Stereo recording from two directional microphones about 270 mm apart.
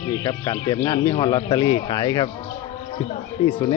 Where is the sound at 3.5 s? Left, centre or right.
Centre.